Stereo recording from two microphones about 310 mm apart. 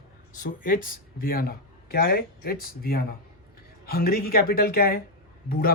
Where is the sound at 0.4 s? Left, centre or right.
Left.